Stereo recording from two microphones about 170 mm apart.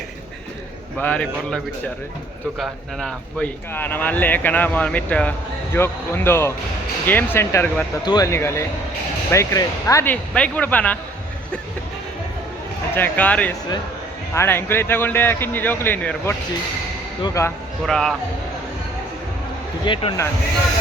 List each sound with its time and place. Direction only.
0.9 s speech: 5° left (ahead or behind)
8.0 s speech: 20° left (ahead or behind)
12.9 s speech: 10° left (ahead or behind)
17.8 s speech: centre (ahead or behind)
19.8 s speech: 30° left (ahead or behind)